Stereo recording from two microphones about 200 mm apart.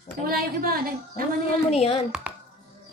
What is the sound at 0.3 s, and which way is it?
Speech, 45° right (ahead or behind).